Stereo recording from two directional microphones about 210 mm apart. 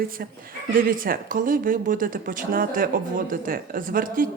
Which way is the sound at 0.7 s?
40° right (ahead or behind).